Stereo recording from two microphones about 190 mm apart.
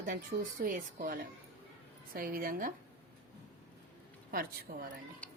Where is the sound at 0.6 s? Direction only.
50° right (ahead or behind).